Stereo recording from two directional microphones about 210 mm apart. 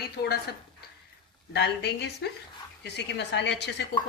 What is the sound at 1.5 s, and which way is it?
A woman's voice, 55° left (ahead or behind).